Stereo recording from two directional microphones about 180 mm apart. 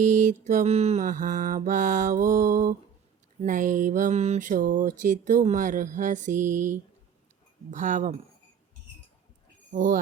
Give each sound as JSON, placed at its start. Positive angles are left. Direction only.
{"t": 0.0, "sound": "mantra", "side_deg": -45}
{"t": 7.7, "sound": "speech", "side_deg": -40}
{"t": 9.7, "sound": "mantra", "side_deg": -50}